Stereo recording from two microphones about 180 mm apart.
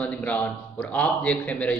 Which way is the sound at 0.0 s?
10° left (ahead or behind).